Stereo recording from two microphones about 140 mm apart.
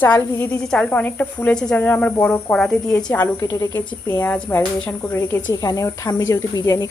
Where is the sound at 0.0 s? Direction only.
10° left (ahead or behind).